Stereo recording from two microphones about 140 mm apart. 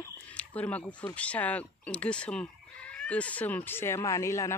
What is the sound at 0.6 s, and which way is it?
Speech, 10° left (ahead or behind).